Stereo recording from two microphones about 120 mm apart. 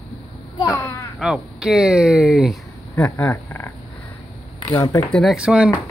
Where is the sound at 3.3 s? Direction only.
20° left (ahead or behind).